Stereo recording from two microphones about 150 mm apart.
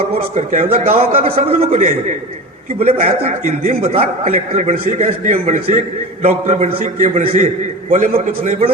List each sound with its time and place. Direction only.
0.3 s a man's voice: 50° right (ahead or behind)